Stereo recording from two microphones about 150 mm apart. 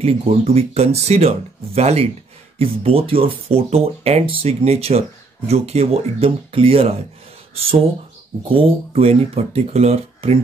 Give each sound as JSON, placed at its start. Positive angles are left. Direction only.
{"t": 0.0, "sound": "speech", "side_deg": -40}
{"t": 8.5, "sound": "speech", "side_deg": -40}